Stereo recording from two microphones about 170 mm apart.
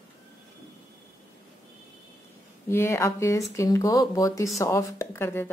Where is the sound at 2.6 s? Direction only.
15° left (ahead or behind).